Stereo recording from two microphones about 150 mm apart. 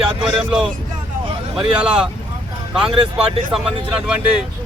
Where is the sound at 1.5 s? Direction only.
5° right (ahead or behind).